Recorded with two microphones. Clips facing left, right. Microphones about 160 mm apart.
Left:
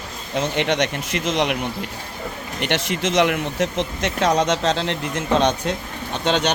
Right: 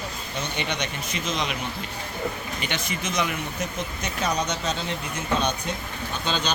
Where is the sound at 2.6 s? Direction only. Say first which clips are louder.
Left 7 dB; 75° left (ahead or behind).